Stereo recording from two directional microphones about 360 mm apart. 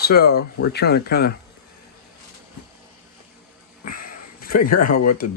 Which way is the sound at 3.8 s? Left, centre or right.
Left.